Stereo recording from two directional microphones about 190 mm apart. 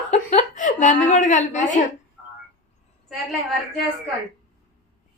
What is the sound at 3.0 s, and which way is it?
Speech, centre (ahead or behind).